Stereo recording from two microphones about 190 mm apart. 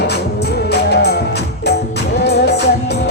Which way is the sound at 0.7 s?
60° left (ahead or behind).